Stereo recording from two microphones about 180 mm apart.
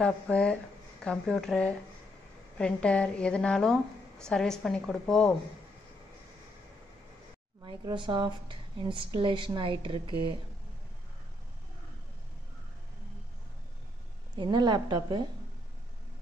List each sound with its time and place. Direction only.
0.0 s a woman's voice: 5° left (ahead or behind)
7.6 s a woman's voice: 25° right (ahead or behind)
14.3 s a woman's voice: 25° right (ahead or behind)